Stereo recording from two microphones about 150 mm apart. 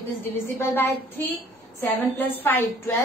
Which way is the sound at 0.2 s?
15° left (ahead or behind).